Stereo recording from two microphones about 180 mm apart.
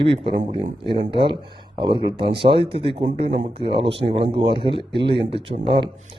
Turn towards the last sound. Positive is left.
turn(degrees=-25)  # may be behind; listen again after turning